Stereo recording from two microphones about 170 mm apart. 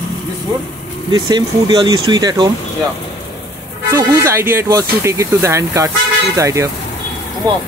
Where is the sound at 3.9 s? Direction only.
15° right (ahead or behind).